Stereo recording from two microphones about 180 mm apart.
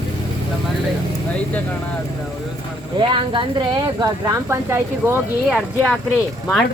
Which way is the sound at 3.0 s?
30° right (ahead or behind).